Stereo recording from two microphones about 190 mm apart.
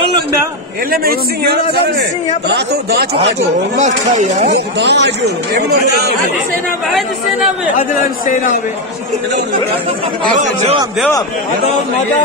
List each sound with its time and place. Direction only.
0.8 s a man's voice: 50° right (ahead or behind)
3.5 s speech: 40° right (ahead or behind)
4.5 s speech: 65° right (ahead or behind)
7.9 s speech: 45° left (ahead or behind)